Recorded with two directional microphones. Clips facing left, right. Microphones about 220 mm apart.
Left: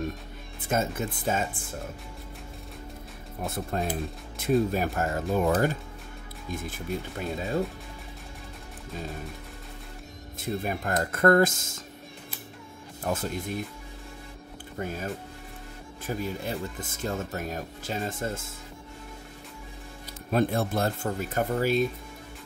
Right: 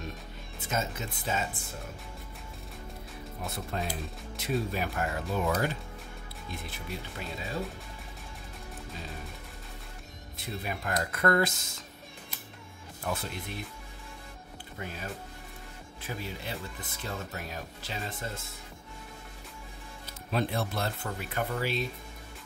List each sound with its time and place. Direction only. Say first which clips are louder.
0.7 s speech: left 6 dB; 50° left (ahead or behind)
3.4 s speech: left 6 dB; 50° left (ahead or behind)
6.5 s speech: left 8 dB; 45° left (ahead or behind)
10.4 s speech: left 6 dB; 45° left (ahead or behind)
13.0 s speech: left 5 dB; 45° left (ahead or behind)
14.8 s speech: left 7 dB; 45° left (ahead or behind)
16.1 s speech: left 7 dB; 45° left (ahead or behind)
20.2 s speech: left 6 dB; 50° left (ahead or behind)